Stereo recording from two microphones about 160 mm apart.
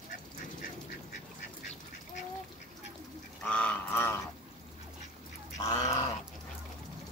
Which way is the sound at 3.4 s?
5° left (ahead or behind).